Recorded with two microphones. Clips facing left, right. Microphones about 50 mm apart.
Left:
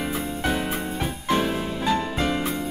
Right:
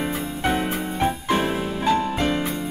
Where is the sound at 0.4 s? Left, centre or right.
Right.